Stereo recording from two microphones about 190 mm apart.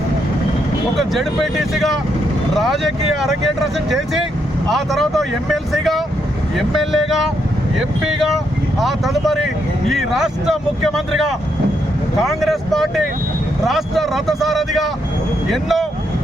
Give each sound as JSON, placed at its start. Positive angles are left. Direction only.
{"t": 0.9, "sound": "speech", "side_deg": 0}